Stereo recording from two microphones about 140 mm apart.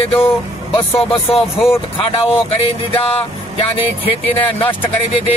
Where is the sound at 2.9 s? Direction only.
45° left (ahead or behind).